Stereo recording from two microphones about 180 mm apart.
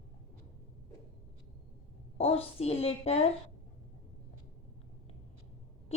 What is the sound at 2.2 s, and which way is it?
A woman's voice, 35° left (ahead or behind).